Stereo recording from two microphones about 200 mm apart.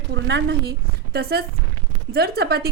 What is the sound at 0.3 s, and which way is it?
A woman's voice, 55° right (ahead or behind).